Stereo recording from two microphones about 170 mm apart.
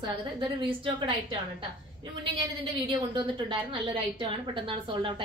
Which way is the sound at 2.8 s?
30° right (ahead or behind).